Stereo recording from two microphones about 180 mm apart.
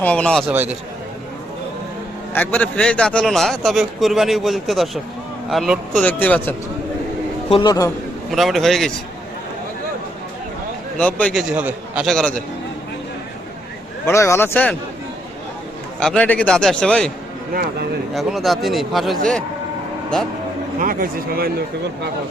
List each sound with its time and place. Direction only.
0.0 s speech: 5° left (ahead or behind)
0.4 s a man's voice: 10° right (ahead or behind)
2.3 s a man's voice: 10° left (ahead or behind)
7.5 s speech: 20° left (ahead or behind)
8.3 s a man's voice: centre (ahead or behind)
11.0 s speech: 10° left (ahead or behind)
11.3 s a man's voice: 5° right (ahead or behind)
14.0 s speech: 15° left (ahead or behind)
16.0 s a man's voice: 5° left (ahead or behind)
17.5 s speech: 55° right (ahead or behind)
18.1 s a man's voice: centre (ahead or behind)
20.7 s speech: 50° right (ahead or behind)